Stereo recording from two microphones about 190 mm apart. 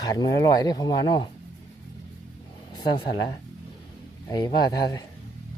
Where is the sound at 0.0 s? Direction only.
20° left (ahead or behind).